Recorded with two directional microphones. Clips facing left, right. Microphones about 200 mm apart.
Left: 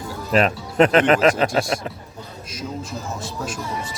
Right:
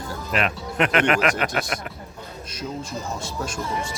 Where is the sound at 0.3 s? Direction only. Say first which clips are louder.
Left 7 dB; 35° left (ahead or behind).